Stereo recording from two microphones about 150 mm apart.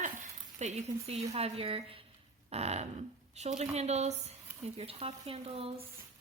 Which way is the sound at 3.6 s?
45° right (ahead or behind).